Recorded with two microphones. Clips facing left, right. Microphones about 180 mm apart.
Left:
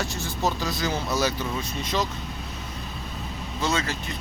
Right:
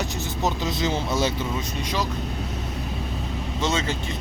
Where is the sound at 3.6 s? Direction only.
25° right (ahead or behind).